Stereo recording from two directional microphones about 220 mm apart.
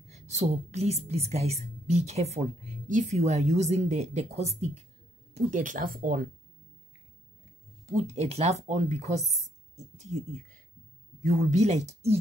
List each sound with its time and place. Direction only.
0.1 s a woman's voice: 30° right (ahead or behind)
7.8 s a woman's voice: 30° right (ahead or behind)